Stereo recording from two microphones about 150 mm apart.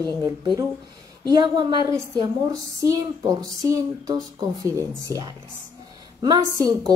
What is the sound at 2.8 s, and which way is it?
A woman's voice, 25° right (ahead or behind).